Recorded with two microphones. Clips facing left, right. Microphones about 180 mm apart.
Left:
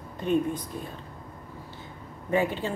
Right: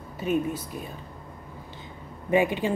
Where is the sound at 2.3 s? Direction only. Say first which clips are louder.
Right 3 dB; 15° right (ahead or behind).